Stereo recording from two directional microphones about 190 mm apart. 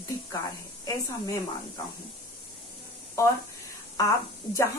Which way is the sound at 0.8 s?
20° left (ahead or behind).